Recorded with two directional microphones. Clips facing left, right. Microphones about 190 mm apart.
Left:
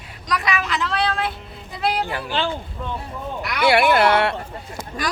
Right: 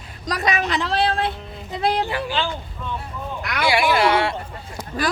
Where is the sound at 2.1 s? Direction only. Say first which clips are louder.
Right 1 dB; 55° left (ahead or behind).